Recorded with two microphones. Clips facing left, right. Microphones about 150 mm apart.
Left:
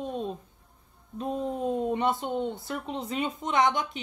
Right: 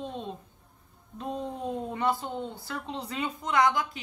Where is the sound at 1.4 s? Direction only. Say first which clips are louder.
Left 7 dB; 20° left (ahead or behind).